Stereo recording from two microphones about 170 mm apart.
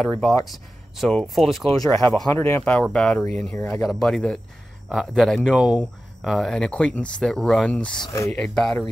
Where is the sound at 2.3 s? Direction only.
15° left (ahead or behind).